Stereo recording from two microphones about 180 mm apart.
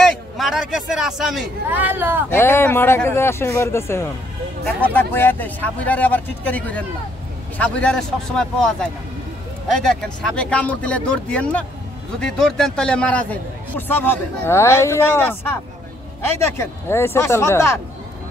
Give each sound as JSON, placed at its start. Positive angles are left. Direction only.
{"t": 0.0, "sound": "a man's voice", "side_deg": 0}
{"t": 2.3, "sound": "a man's voice", "side_deg": 15}
{"t": 16.3, "sound": "a man's voice", "side_deg": 15}